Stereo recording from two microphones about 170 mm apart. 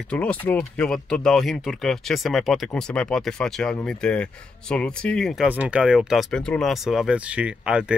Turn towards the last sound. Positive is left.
turn(degrees=-5)  # may be behind; listen again after turning